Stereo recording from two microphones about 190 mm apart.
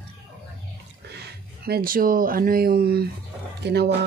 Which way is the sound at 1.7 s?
50° right (ahead or behind).